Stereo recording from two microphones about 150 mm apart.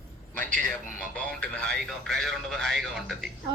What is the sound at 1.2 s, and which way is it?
Speech, 5° left (ahead or behind).